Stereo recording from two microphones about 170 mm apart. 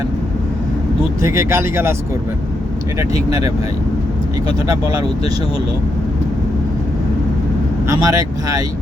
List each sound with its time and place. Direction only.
1.2 s speech: 15° right (ahead or behind)
4.4 s speech: 20° right (ahead or behind)
7.9 s speech: 20° right (ahead or behind)